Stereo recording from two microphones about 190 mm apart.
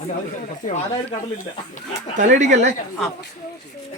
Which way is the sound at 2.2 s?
40° right (ahead or behind).